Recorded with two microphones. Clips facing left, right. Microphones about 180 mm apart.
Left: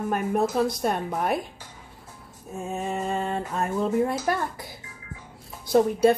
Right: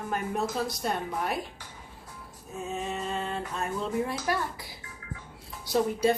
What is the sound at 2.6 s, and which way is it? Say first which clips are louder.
A woman's voice: left 4 dB; 50° left (ahead or behind).